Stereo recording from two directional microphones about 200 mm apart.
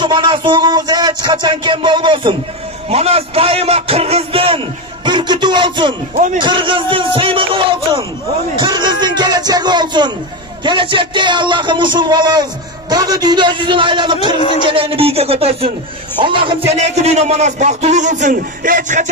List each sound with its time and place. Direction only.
0.0 s speech: 25° right (ahead or behind)
9.0 s music: 20° right (ahead or behind)
10.6 s a man's voice: 25° right (ahead or behind); by 19.0 s 40° right (ahead or behind)